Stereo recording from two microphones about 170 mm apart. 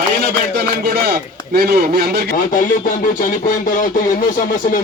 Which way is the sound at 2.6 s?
55° left (ahead or behind).